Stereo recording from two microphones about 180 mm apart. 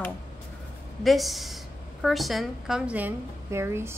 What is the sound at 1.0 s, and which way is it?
A woman's voice, centre (ahead or behind).